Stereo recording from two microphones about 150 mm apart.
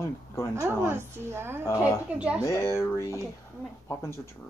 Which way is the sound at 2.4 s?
20° left (ahead or behind).